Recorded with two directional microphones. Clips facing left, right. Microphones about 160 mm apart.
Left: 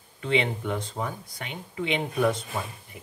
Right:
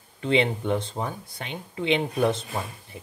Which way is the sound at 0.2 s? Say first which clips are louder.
Right 3 dB; 30° right (ahead or behind).